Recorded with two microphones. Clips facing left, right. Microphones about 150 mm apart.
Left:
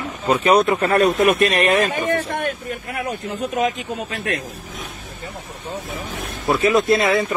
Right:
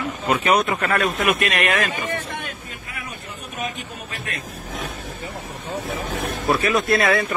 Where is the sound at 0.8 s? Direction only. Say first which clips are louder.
Left 5 dB; 35° left (ahead or behind).